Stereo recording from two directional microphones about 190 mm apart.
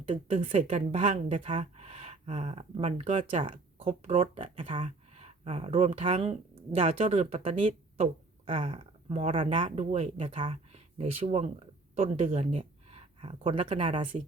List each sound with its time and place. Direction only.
0.1 s speech: 40° right (ahead or behind)